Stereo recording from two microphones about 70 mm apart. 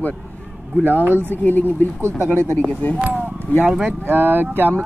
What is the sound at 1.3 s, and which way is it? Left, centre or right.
Speech, left.